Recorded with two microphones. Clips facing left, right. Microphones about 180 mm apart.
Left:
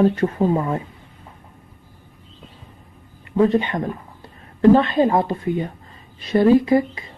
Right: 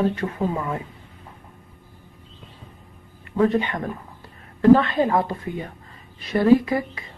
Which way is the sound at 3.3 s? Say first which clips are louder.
Left 3 dB; 20° left (ahead or behind).